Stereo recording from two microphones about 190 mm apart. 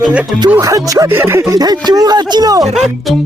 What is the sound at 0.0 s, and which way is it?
Speech, 5° right (ahead or behind).